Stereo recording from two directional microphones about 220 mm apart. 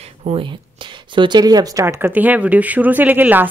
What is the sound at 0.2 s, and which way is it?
Speech, 25° right (ahead or behind).